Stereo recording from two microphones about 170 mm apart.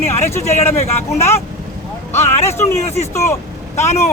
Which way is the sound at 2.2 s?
40° left (ahead or behind).